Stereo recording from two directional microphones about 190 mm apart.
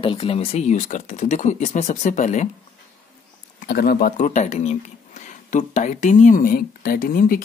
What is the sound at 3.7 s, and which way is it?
Speech, 55° left (ahead or behind).